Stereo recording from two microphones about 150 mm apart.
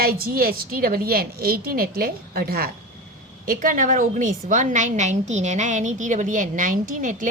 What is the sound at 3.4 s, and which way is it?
A woman's voice, 65° right (ahead or behind).